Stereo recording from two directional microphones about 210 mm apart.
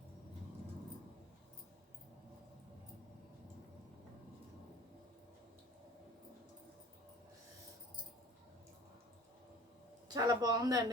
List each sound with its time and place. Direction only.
10.1 s a man's voice: 20° right (ahead or behind)